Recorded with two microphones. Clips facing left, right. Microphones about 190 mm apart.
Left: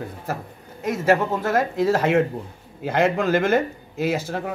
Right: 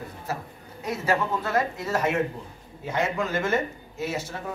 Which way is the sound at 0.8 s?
45° left (ahead or behind).